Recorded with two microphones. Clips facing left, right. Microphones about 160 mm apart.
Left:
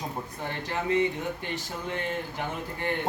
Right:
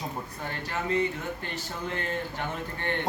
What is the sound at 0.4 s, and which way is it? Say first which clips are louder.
Speech: left 2 dB; 20° left (ahead or behind).